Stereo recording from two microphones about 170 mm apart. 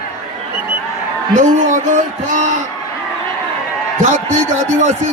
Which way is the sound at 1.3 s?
45° right (ahead or behind).